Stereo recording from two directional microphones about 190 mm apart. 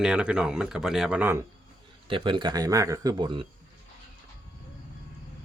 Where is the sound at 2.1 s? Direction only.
25° right (ahead or behind).